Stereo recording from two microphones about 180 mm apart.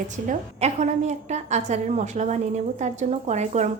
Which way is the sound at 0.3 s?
40° right (ahead or behind).